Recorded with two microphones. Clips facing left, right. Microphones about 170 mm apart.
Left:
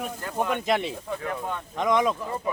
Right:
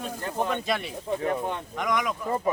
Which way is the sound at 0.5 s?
20° left (ahead or behind).